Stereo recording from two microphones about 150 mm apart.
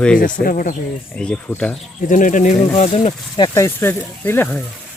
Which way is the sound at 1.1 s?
5° left (ahead or behind).